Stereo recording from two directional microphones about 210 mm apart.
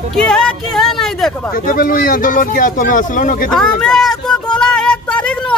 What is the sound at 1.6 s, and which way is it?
Speech, 40° left (ahead or behind).